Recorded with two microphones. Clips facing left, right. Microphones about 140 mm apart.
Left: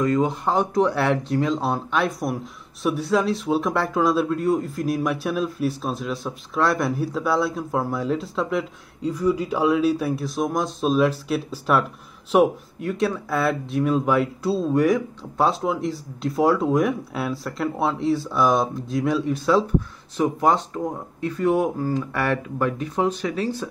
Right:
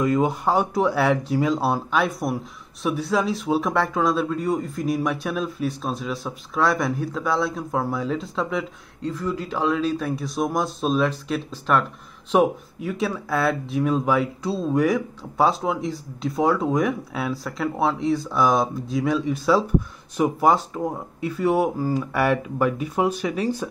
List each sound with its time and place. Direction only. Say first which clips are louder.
0.0 s speech: even; 10° right (ahead or behind)
9.1 s speech: left 6 dB; 10° left (ahead or behind); by 23.7 s 15° right (ahead or behind)